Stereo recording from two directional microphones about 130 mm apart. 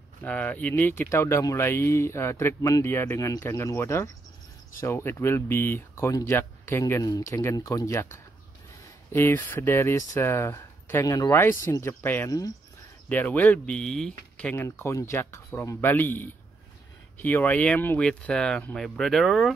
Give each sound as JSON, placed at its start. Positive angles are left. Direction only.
{"t": 0.2, "sound": "speech", "side_deg": 10}
{"t": 12.3, "sound": "speech", "side_deg": 30}
{"t": 13.1, "sound": "speech", "side_deg": 15}